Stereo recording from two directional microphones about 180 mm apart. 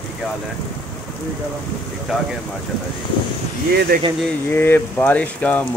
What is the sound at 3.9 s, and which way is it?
Speech, 50° right (ahead or behind).